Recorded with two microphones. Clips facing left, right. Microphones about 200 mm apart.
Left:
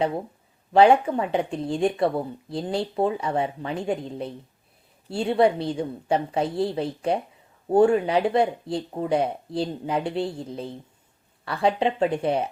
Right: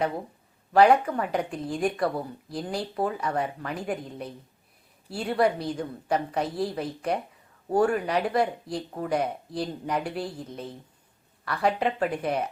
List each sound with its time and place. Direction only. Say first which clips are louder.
0.7 s a woman's voice: left 2 dB; 25° left (ahead or behind)